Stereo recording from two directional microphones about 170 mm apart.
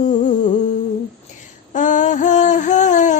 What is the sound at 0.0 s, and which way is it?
Music, 50° left (ahead or behind).